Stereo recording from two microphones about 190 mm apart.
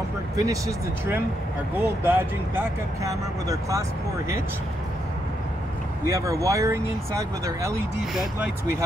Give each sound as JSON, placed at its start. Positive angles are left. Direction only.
{"t": 0.4, "sound": "speech", "side_deg": -15}
{"t": 6.0, "sound": "speech", "side_deg": -15}